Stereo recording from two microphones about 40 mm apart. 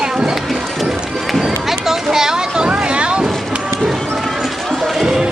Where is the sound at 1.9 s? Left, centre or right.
Centre.